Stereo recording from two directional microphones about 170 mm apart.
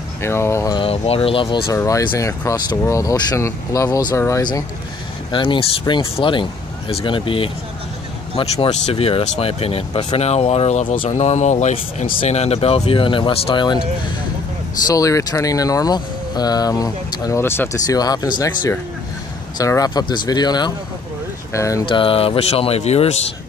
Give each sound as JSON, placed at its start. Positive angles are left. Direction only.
{"t": 0.2, "sound": "speech", "side_deg": 15}
{"t": 0.7, "sound": "speech", "side_deg": 35}
{"t": 1.7, "sound": "speech", "side_deg": 20}
{"t": 14.9, "sound": "speech", "side_deg": 20}
{"t": 21.8, "sound": "speech", "side_deg": 30}